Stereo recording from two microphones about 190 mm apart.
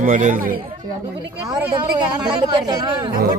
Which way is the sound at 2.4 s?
20° right (ahead or behind).